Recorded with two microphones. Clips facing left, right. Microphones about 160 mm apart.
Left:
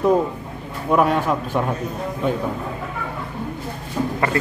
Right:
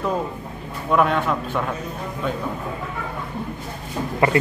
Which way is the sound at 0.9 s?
10° left (ahead or behind).